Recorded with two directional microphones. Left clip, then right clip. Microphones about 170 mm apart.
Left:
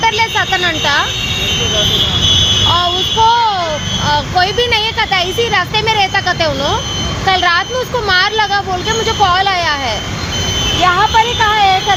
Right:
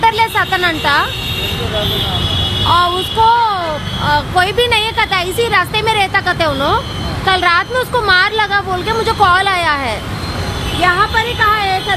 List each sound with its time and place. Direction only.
0.0 s speech: 20° right (ahead or behind)
2.6 s child singing: 20° right (ahead or behind)
4.0 s speech: 20° right (ahead or behind)
10.8 s speech: 20° right (ahead or behind)